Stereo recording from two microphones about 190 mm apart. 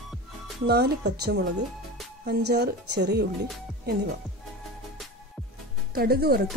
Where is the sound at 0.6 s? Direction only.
55° right (ahead or behind).